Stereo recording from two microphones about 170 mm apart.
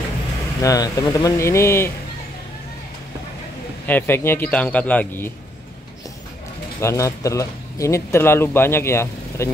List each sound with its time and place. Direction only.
0.6 s speech: 20° left (ahead or behind)
3.8 s speech: 10° left (ahead or behind)
6.8 s speech: 15° left (ahead or behind)